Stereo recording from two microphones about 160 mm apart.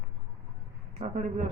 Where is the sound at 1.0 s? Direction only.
45° right (ahead or behind).